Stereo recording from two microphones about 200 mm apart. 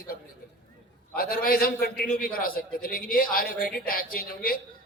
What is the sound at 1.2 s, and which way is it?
A man's voice, 50° left (ahead or behind).